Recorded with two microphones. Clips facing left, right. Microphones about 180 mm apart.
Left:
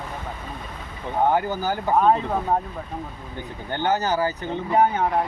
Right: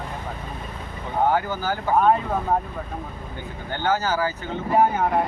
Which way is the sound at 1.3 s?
15° left (ahead or behind).